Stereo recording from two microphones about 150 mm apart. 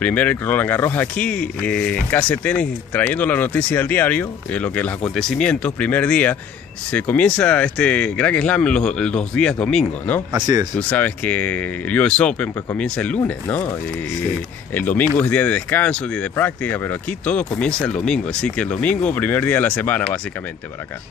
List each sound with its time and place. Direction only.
0.0 s speech: 10° left (ahead or behind)
10.3 s speech: 25° right (ahead or behind)
10.8 s speech: 10° left (ahead or behind)
14.7 s speech: 10° left (ahead or behind)